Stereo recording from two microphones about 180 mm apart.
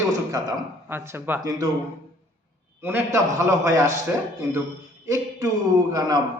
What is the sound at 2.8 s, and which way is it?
A man's voice, 15° right (ahead or behind).